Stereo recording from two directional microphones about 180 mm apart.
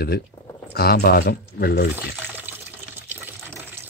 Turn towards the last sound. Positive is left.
turn(degrees=-10)  # may be behind; listen again after turning